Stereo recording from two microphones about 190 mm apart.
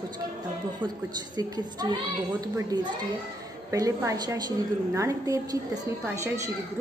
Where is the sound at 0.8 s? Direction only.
20° right (ahead or behind).